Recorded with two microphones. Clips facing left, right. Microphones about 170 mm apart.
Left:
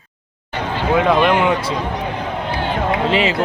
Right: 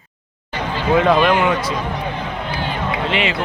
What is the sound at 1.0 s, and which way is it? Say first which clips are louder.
Speech: left 1 dB; 15° left (ahead or behind).